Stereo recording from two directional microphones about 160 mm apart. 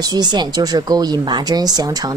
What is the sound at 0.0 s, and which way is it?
A woman's voice, 25° right (ahead or behind).